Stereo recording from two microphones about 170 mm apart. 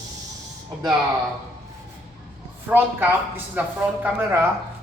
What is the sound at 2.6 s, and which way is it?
Speech, 10° right (ahead or behind).